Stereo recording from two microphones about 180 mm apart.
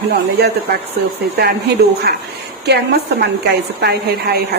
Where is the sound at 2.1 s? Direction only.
60° right (ahead or behind).